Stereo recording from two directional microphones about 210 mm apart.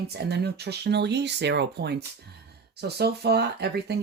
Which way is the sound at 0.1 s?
50° right (ahead or behind).